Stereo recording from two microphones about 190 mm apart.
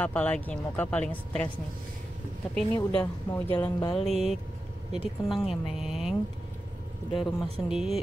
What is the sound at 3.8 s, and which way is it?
Music, 25° left (ahead or behind).